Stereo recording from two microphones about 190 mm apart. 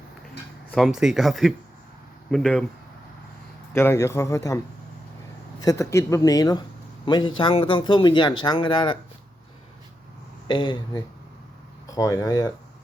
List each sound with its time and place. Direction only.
0.7 s speech: centre (ahead or behind)
3.7 s a man's voice: 15° left (ahead or behind)
10.5 s speech: 25° left (ahead or behind)